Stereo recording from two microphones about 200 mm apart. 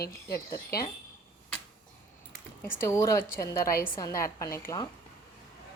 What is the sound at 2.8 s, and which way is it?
A woman's voice, 15° left (ahead or behind).